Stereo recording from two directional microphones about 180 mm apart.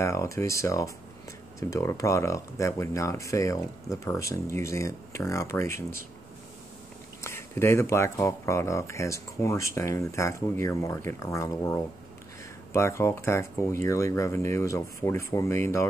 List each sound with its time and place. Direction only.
0.0 s speech: 15° left (ahead or behind)
7.2 s speech: 15° left (ahead or behind)